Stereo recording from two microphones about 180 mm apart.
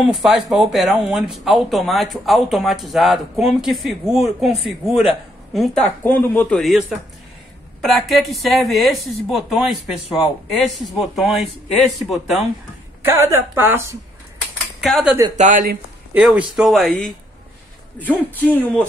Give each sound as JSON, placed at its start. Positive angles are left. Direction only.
{"t": 0.0, "sound": "speech", "side_deg": 0}
{"t": 6.0, "sound": "speech", "side_deg": 10}
{"t": 7.8, "sound": "speech", "side_deg": 0}
{"t": 13.0, "sound": "a woman's voice", "side_deg": -15}
{"t": 14.8, "sound": "speech", "side_deg": 0}
{"t": 15.3, "sound": "speech", "side_deg": -45}
{"t": 16.1, "sound": "speech", "side_deg": -5}